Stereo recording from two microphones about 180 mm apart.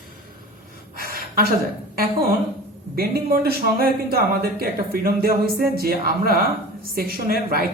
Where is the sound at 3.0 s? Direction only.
60° right (ahead or behind).